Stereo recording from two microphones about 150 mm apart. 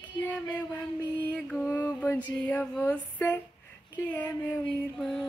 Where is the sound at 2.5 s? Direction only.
10° left (ahead or behind).